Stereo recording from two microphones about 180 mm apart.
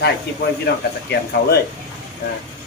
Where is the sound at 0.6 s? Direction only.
65° left (ahead or behind).